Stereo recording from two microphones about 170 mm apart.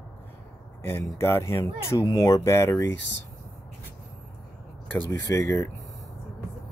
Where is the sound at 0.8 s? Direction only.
15° left (ahead or behind).